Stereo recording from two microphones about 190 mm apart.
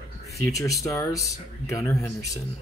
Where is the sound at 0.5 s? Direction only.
15° left (ahead or behind).